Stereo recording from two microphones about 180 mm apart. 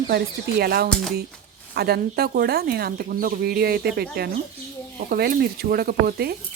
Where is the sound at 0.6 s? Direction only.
60° right (ahead or behind).